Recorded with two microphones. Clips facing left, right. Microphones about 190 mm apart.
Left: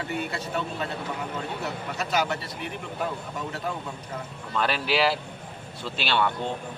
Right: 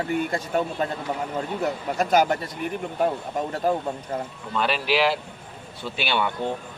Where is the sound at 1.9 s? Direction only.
50° right (ahead or behind).